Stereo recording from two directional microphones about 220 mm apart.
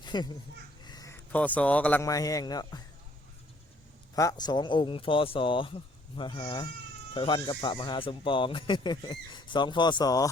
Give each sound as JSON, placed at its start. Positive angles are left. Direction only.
{"t": 0.0, "sound": "children playing", "side_deg": 20}
{"t": 0.9, "sound": "a man's voice", "side_deg": 15}
{"t": 4.1, "sound": "speech", "side_deg": 15}